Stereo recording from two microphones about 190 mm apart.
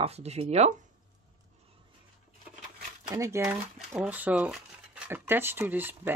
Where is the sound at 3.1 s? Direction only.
15° right (ahead or behind).